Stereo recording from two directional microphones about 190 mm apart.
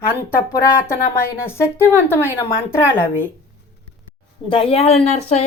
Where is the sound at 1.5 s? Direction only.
15° left (ahead or behind).